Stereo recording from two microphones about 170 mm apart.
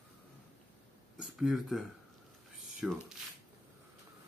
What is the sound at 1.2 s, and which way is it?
Speech, 5° right (ahead or behind).